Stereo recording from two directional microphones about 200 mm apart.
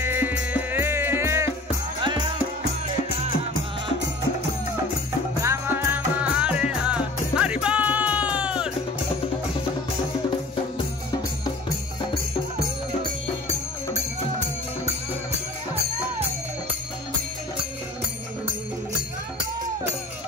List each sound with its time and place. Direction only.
0.0 s music: 10° right (ahead or behind)
5.4 s music: 15° right (ahead or behind)